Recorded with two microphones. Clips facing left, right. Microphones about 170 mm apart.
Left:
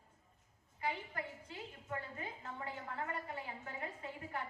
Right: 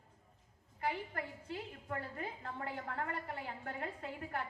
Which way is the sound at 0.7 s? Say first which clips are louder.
Right 2 dB; 55° right (ahead or behind).